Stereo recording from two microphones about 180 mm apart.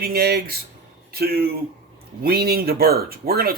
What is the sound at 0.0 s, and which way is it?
Speech, 60° right (ahead or behind).